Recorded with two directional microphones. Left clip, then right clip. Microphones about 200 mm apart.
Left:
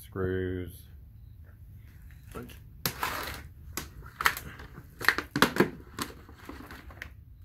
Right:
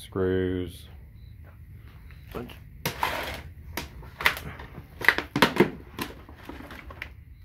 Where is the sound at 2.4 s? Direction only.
20° right (ahead or behind).